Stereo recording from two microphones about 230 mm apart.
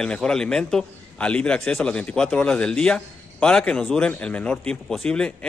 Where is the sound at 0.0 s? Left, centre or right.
Centre.